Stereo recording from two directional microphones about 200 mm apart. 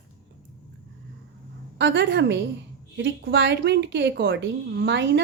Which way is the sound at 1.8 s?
65° right (ahead or behind).